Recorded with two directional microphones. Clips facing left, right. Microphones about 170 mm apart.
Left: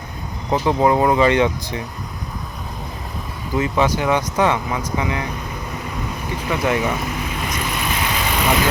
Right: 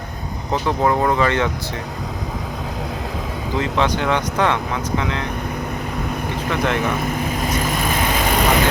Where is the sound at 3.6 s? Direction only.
10° left (ahead or behind).